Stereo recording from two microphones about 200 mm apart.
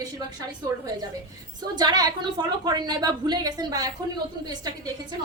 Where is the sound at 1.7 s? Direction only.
20° right (ahead or behind).